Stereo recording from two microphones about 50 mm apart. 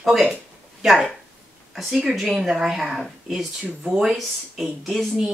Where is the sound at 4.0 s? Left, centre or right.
Centre.